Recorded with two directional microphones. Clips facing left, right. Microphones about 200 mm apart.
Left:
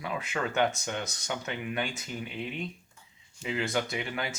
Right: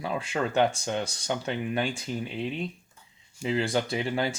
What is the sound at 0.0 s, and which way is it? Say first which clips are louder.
Speech: right 4 dB; 30° right (ahead or behind).